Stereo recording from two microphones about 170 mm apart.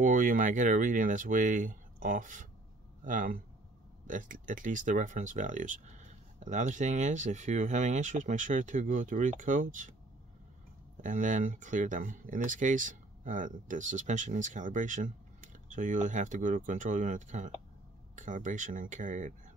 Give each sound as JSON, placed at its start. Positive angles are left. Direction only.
{"t": 0.0, "sound": "speech", "side_deg": -50}
{"t": 11.0, "sound": "speech", "side_deg": -50}